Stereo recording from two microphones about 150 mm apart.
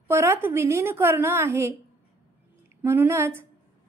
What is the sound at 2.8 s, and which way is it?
Speech, 15° right (ahead or behind).